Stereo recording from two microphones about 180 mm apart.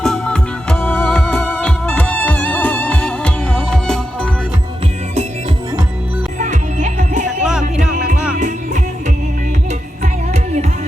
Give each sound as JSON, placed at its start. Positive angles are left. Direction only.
{"t": 0.0, "sound": "music", "side_deg": 5}
{"t": 6.4, "sound": "music", "side_deg": -45}
{"t": 7.9, "sound": "music", "side_deg": -5}
{"t": 8.4, "sound": "music", "side_deg": -45}
{"t": 10.0, "sound": "music", "side_deg": -40}